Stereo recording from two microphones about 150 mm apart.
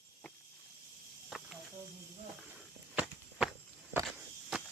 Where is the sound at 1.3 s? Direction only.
5° right (ahead or behind).